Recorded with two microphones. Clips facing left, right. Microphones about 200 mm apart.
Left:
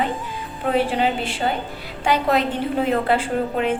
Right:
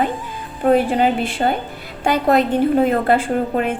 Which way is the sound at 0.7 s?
45° right (ahead or behind).